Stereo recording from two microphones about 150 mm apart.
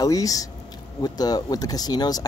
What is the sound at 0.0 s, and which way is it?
Speech, 25° left (ahead or behind).